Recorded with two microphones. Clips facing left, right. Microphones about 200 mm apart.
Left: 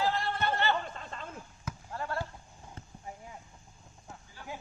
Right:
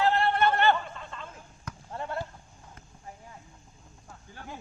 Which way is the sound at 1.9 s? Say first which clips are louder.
Right 2 dB; 20° right (ahead or behind).